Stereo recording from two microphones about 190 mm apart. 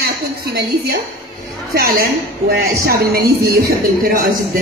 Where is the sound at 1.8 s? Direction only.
50° right (ahead or behind).